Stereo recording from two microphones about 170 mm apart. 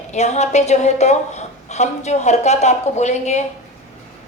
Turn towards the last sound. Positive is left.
turn(degrees=45)  # may be behind; listen again after turning